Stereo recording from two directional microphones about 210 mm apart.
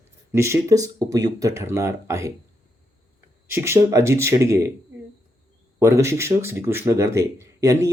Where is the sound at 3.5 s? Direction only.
15° right (ahead or behind).